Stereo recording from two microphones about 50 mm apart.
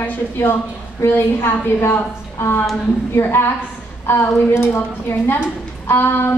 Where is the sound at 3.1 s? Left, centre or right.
Left.